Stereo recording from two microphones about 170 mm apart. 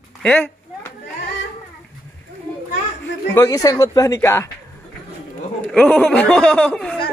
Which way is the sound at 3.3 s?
20° left (ahead or behind).